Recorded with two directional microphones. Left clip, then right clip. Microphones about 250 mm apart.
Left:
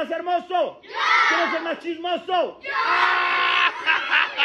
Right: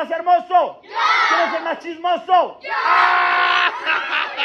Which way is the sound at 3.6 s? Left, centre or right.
Centre.